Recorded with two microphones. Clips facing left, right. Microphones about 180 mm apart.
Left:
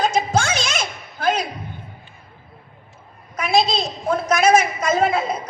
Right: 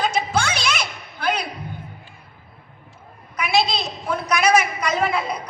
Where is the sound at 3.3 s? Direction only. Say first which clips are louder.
Left 2 dB; 45° left (ahead or behind).